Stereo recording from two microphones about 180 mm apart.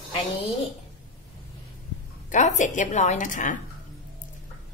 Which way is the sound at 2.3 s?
40° left (ahead or behind).